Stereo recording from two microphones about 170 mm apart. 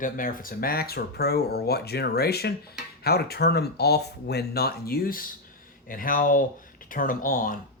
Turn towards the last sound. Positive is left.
turn(degrees=55)  # may be behind; listen again after turning